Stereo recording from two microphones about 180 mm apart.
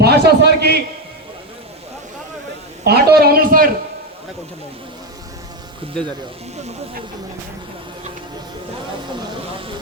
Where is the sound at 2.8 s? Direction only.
60° right (ahead or behind).